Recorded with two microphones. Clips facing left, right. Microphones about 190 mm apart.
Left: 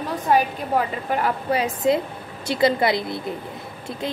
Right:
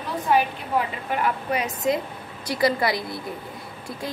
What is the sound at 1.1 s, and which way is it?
A woman's voice, 40° left (ahead or behind).